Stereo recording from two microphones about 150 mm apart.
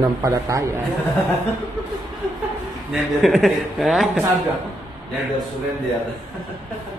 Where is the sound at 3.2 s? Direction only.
Centre (ahead or behind).